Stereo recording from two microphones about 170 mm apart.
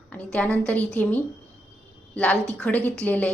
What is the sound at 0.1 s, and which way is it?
A woman's voice, 10° left (ahead or behind).